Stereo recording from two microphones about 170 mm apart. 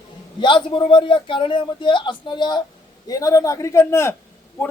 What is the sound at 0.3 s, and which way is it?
A man's voice, 30° left (ahead or behind).